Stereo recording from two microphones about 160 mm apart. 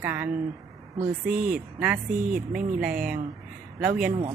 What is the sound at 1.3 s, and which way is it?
Speech, 65° right (ahead or behind).